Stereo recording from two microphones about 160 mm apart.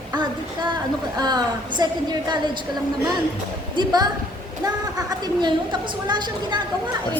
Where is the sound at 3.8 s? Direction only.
25° right (ahead or behind).